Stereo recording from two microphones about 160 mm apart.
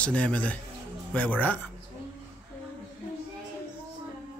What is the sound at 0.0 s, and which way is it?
A man's voice, 5° left (ahead or behind).